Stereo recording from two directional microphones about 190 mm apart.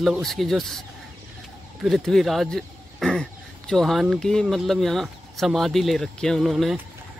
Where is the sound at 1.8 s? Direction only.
Centre (ahead or behind).